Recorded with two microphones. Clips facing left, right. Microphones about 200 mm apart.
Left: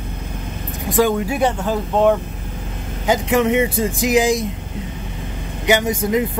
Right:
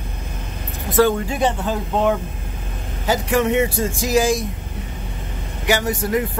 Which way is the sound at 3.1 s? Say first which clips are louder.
Left 2 dB; 20° left (ahead or behind).